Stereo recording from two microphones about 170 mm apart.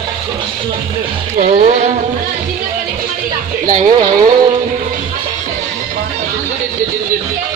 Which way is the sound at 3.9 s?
25° right (ahead or behind).